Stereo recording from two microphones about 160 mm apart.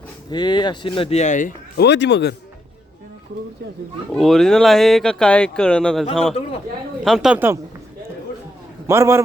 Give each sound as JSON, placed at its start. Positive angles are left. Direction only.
{"t": 0.3, "sound": "speech", "side_deg": 25}
{"t": 4.1, "sound": "speech", "side_deg": 0}
{"t": 8.9, "sound": "a man's voice", "side_deg": -15}